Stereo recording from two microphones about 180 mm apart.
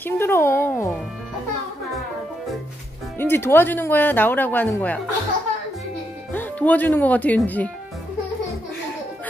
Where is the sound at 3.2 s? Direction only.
10° left (ahead or behind).